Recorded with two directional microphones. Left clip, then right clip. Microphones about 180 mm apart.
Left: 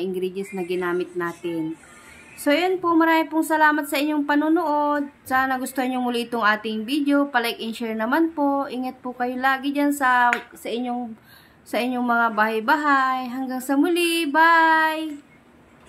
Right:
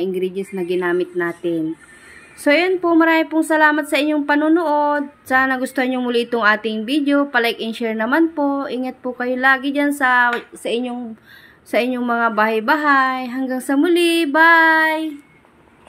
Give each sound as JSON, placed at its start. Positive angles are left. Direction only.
{"t": 0.0, "sound": "a woman's voice", "side_deg": -15}